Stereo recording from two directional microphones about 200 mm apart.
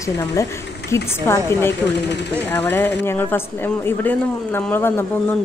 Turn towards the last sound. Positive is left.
turn(degrees=10)  # may be behind; listen again after turning